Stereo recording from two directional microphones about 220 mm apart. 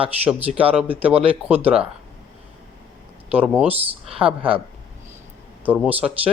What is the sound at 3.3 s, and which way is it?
A man's voice, 5° right (ahead or behind).